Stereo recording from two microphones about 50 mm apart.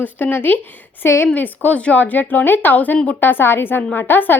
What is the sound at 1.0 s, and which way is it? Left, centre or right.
Speech, left.